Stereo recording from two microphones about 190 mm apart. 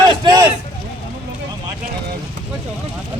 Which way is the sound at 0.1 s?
25° right (ahead or behind).